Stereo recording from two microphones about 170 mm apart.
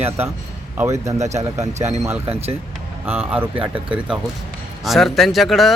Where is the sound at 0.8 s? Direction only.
15° right (ahead or behind).